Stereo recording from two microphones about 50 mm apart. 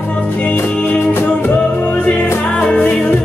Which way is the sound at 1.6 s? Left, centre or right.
Left.